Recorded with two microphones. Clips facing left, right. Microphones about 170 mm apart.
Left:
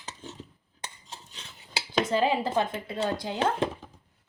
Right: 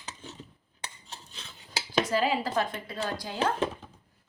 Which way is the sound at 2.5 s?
25° left (ahead or behind).